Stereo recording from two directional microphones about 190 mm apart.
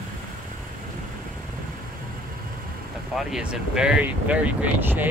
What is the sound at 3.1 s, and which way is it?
Speech, centre (ahead or behind).